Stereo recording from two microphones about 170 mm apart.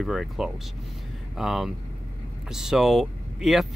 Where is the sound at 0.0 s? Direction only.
Centre (ahead or behind).